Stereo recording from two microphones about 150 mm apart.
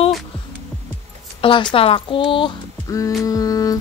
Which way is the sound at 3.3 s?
25° left (ahead or behind).